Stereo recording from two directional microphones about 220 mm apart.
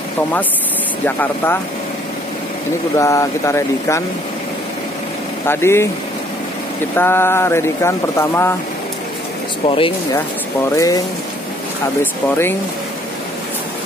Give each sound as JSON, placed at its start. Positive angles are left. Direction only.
{"t": 1.0, "sound": "speech", "side_deg": 10}
{"t": 3.0, "sound": "speech", "side_deg": 15}
{"t": 5.5, "sound": "speech", "side_deg": 10}
{"t": 7.0, "sound": "speech", "side_deg": 10}
{"t": 9.7, "sound": "speech", "side_deg": 25}
{"t": 12.0, "sound": "speech", "side_deg": 10}